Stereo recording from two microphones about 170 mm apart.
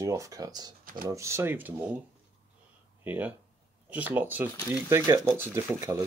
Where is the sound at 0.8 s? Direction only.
55° right (ahead or behind).